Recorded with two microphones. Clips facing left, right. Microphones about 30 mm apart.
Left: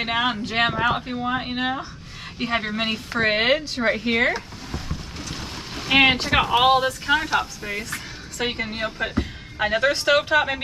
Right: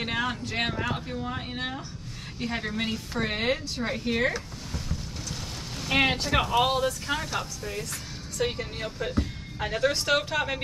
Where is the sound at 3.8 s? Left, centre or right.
Left.